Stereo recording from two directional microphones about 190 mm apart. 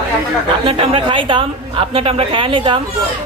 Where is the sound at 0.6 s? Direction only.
30° right (ahead or behind).